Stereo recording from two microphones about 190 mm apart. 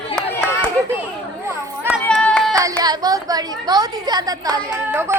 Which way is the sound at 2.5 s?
20° right (ahead or behind).